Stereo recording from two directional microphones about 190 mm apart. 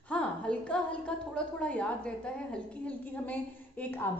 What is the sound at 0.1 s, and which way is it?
A woman's voice, 5° left (ahead or behind).